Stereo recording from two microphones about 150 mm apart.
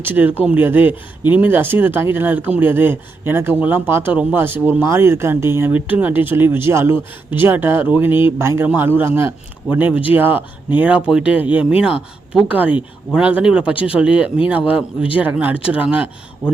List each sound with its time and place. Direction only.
0.0 s speech: 15° right (ahead or behind)